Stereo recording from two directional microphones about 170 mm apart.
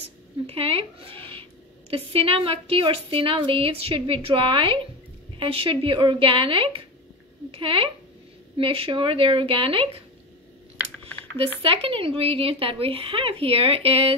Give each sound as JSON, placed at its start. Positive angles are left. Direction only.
{"t": 0.0, "sound": "a sound", "side_deg": -35}
{"t": 1.9, "sound": "a woman's voice", "side_deg": -35}
{"t": 11.6, "sound": "a woman's voice", "side_deg": -35}